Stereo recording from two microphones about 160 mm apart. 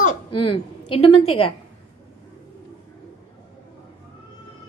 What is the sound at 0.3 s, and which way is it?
A woman's voice, 35° left (ahead or behind).